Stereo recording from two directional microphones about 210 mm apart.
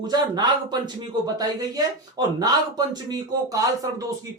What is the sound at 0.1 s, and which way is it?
Speech, 20° right (ahead or behind).